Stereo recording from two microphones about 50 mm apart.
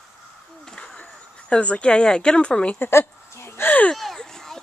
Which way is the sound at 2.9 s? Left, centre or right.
Left.